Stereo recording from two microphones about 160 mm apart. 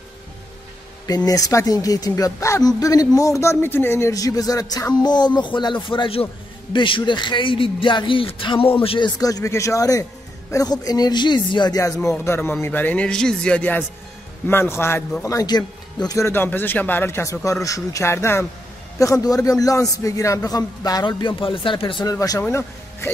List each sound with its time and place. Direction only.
1.0 s speech: 25° left (ahead or behind)
9.2 s speech: 20° left (ahead or behind)
22.1 s speech: 20° left (ahead or behind)